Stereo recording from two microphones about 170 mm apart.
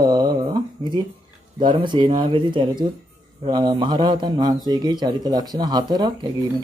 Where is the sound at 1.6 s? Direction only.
25° right (ahead or behind).